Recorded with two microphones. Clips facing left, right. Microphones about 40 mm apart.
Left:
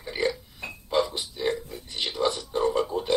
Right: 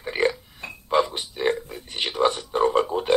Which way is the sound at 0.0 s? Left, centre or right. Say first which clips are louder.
Right 4 dB; right.